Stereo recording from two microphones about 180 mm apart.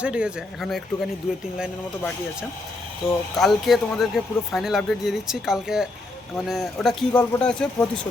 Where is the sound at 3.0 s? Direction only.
Centre (ahead or behind).